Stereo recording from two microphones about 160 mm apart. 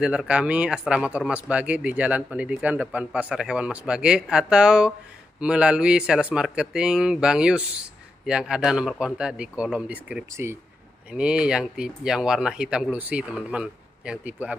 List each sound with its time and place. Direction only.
0.0 s speech: 5° right (ahead or behind)